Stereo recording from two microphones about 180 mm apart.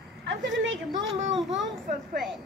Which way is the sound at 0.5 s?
90° right.